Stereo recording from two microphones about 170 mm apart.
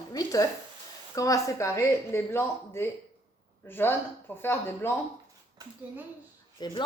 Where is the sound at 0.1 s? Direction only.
20° left (ahead or behind).